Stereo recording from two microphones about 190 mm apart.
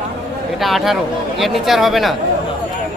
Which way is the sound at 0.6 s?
Centre (ahead or behind).